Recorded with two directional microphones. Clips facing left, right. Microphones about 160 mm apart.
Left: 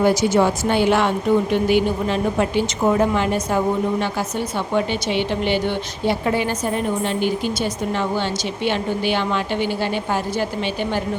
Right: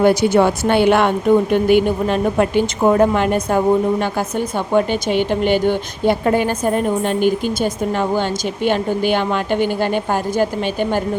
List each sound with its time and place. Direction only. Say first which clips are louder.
0.0 s a woman's voice: right 3 dB; 60° right (ahead or behind)
4.7 s a woman's voice: right 5 dB; 50° right (ahead or behind)